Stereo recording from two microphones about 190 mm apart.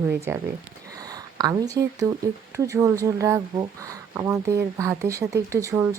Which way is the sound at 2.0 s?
15° right (ahead or behind).